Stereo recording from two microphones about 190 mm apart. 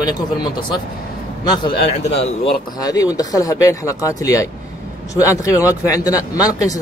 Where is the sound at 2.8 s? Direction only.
20° left (ahead or behind).